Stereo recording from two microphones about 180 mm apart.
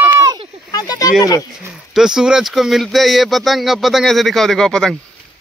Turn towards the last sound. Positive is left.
turn(degrees=5)  # may be behind; listen again after turning